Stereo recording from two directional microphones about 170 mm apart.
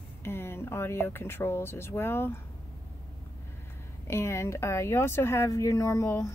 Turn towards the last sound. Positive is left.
turn(degrees=15)  # may be behind; listen again after turning